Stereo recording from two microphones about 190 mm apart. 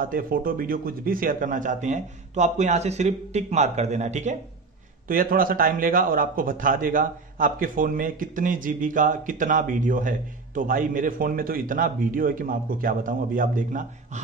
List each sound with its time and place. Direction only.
0.0 s a man's voice: 50° right (ahead or behind)